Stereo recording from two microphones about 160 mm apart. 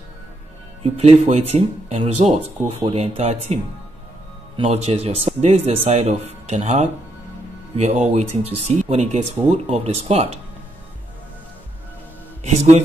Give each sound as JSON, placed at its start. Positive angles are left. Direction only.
{"t": 0.8, "sound": "speech", "side_deg": -40}
{"t": 4.6, "sound": "speech", "side_deg": -40}
{"t": 12.4, "sound": "speech", "side_deg": -45}